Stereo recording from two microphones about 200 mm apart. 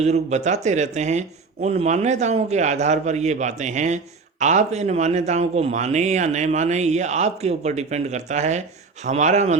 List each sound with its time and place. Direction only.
0.0 s a man's voice: 35° right (ahead or behind)